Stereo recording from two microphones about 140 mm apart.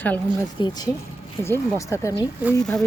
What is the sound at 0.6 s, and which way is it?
Speech, 30° left (ahead or behind).